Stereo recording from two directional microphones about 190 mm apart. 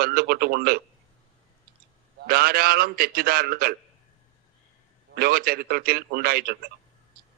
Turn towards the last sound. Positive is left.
turn(degrees=-50)  # may be behind; listen again after turning